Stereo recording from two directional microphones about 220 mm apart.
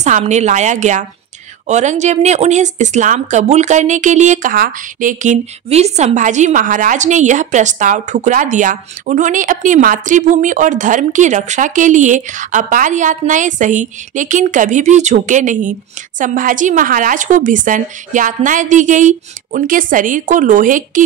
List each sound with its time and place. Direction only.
0.0 s speech: 30° right (ahead or behind)